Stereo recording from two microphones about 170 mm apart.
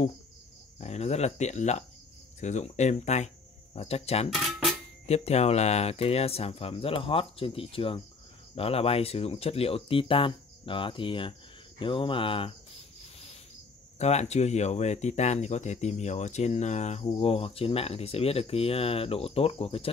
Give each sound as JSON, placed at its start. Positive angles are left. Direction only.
{"t": 0.7, "sound": "speech", "side_deg": 40}
{"t": 4.3, "sound": "a sound", "side_deg": 0}
{"t": 5.0, "sound": "speech", "side_deg": 40}
{"t": 13.9, "sound": "speech", "side_deg": 40}